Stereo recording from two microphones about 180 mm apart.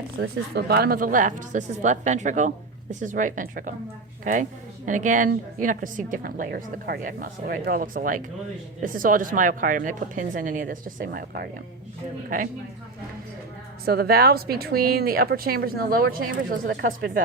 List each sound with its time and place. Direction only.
0.2 s a woman's voice: 65° right (ahead or behind)
13.8 s a woman's voice: 60° right (ahead or behind)